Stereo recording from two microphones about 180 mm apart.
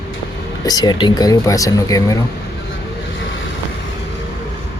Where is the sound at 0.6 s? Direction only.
20° left (ahead or behind).